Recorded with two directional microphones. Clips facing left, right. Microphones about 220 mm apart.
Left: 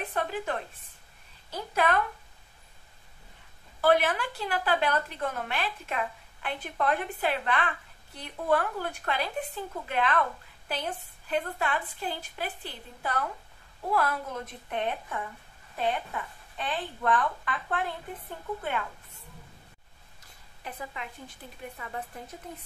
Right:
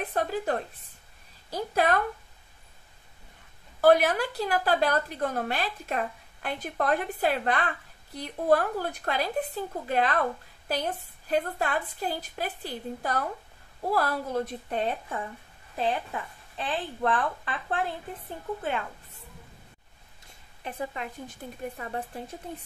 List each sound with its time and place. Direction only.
0.1 s a woman's voice: 40° right (ahead or behind)
3.8 s a woman's voice: 40° right (ahead or behind)
20.2 s a sound: 30° right (ahead or behind)
21.4 s speech: 45° right (ahead or behind)
21.7 s a woman's voice: 35° right (ahead or behind)